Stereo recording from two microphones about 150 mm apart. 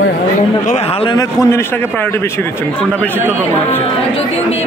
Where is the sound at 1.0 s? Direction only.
25° left (ahead or behind).